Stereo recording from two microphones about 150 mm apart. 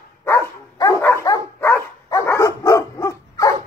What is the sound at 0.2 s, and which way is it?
Dog, 20° left (ahead or behind).